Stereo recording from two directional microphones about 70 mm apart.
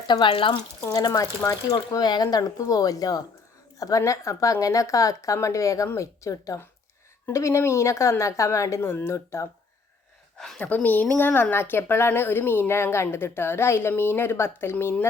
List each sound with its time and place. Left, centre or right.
0.1 s speech: left
0.9 s a woman's voice: left
10.3 s a woman's voice: centre
10.8 s a woman's voice: left